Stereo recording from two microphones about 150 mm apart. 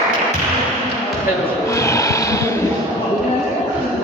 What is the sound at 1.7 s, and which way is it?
Music, 20° left (ahead or behind).